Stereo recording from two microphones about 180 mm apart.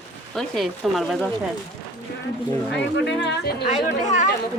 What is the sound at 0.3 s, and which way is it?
Speech, centre (ahead or behind).